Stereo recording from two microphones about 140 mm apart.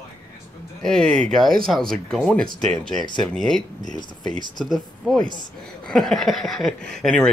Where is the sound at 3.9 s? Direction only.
30° left (ahead or behind).